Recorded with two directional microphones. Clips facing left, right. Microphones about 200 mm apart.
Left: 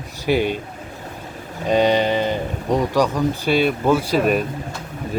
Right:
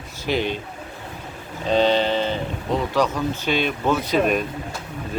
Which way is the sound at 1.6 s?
15° left (ahead or behind).